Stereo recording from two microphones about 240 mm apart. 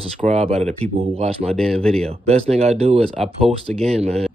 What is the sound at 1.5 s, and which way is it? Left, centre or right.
Speech, centre.